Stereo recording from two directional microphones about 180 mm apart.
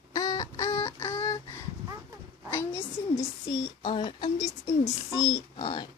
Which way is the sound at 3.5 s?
25° left (ahead or behind).